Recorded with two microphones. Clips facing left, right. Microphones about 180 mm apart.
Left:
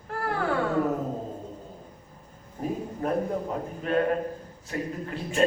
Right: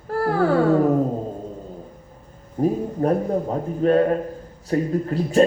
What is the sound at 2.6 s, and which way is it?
A man's voice, 35° right (ahead or behind).